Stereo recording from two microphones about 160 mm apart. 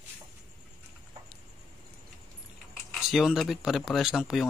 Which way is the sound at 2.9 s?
Centre (ahead or behind).